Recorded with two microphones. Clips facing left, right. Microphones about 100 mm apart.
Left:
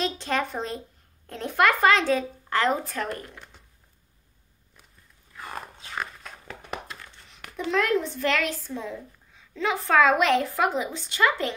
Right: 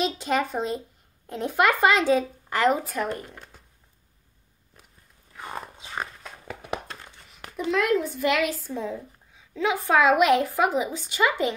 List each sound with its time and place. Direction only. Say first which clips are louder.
0.0 s a woman's voice: right 2 dB; 10° right (ahead or behind)
5.3 s a sound: right 1 dB; 20° right (ahead or behind)
7.5 s a woman's voice: right 1 dB; centre (ahead or behind)